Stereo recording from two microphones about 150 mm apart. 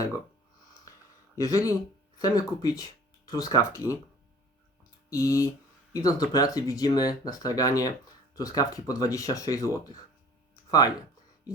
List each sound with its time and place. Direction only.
1.4 s speech: 20° left (ahead or behind)
5.0 s speech: 20° left (ahead or behind)
10.7 s speech: 25° left (ahead or behind)